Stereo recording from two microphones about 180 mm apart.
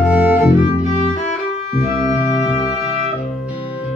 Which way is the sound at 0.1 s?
5° right (ahead or behind).